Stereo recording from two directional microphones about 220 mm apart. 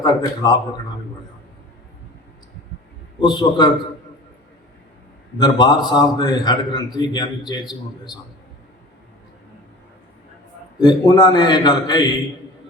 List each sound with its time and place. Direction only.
0.0 s a man's voice: 20° left (ahead or behind)
3.2 s a man's voice: 20° left (ahead or behind)
5.4 s a man's voice: 20° left (ahead or behind)
10.8 s a man's voice: 20° left (ahead or behind)